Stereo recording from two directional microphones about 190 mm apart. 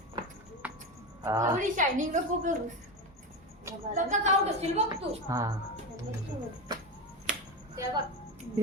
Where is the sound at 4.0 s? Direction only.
40° right (ahead or behind).